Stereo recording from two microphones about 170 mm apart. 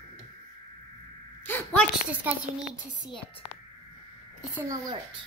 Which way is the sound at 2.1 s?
10° right (ahead or behind).